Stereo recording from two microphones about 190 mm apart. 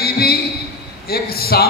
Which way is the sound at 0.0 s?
55° left (ahead or behind).